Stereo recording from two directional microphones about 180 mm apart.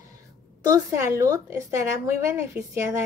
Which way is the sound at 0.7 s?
15° right (ahead or behind).